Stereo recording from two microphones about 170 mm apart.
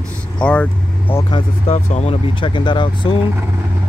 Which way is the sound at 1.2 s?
30° left (ahead or behind).